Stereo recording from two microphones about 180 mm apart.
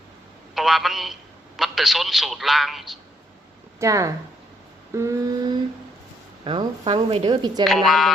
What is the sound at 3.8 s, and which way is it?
A woman's voice, 15° right (ahead or behind).